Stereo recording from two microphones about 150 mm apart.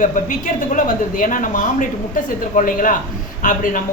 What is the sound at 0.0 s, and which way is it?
A woman's voice, 60° left (ahead or behind).